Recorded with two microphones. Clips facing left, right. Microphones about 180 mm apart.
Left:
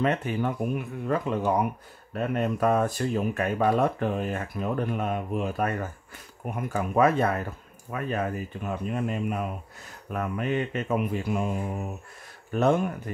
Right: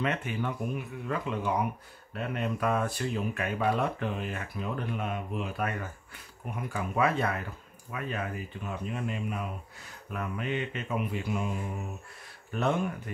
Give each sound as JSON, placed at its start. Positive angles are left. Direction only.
{"t": 0.0, "sound": "speech", "side_deg": 35}
{"t": 12.5, "sound": "speech", "side_deg": 45}